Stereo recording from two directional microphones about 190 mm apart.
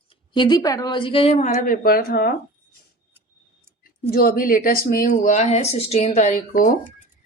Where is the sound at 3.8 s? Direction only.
50° left (ahead or behind).